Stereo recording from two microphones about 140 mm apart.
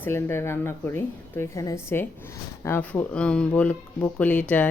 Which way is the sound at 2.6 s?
15° left (ahead or behind).